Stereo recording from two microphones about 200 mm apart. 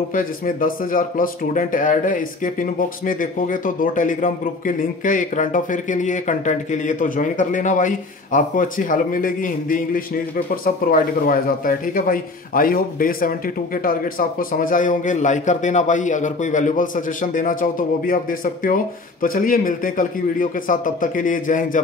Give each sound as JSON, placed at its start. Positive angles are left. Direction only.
{"t": 0.1, "sound": "a man's voice", "side_deg": 45}